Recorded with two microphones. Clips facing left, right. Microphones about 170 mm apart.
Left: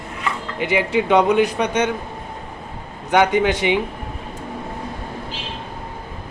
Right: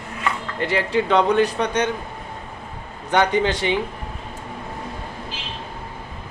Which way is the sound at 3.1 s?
15° left (ahead or behind).